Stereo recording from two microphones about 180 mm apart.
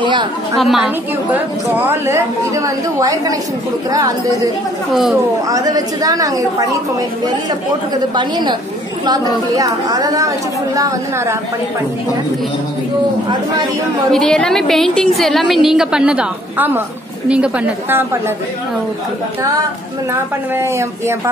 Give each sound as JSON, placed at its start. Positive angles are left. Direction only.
{"t": 0.0, "sound": "a sound", "side_deg": -25}
{"t": 0.6, "sound": "a woman's voice", "side_deg": 0}
{"t": 5.1, "sound": "a woman's voice", "side_deg": -20}
{"t": 8.2, "sound": "a woman's voice", "side_deg": -25}
{"t": 14.1, "sound": "a woman's voice", "side_deg": 5}